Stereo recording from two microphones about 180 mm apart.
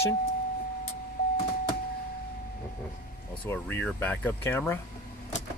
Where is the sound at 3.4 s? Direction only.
10° left (ahead or behind).